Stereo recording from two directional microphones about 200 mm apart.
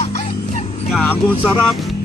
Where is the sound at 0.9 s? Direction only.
5° left (ahead or behind).